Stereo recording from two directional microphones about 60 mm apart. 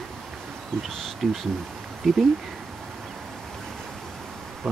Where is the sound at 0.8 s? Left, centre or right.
Centre.